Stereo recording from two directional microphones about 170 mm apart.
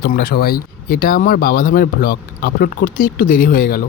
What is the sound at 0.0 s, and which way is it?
Speech, 60° left (ahead or behind).